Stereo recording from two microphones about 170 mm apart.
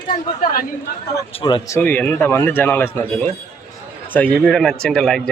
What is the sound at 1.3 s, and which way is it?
Speech, 30° left (ahead or behind).